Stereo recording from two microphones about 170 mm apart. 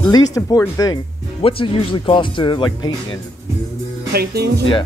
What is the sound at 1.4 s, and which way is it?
Speech, 30° left (ahead or behind).